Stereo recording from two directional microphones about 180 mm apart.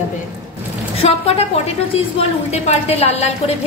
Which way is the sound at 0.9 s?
30° left (ahead or behind).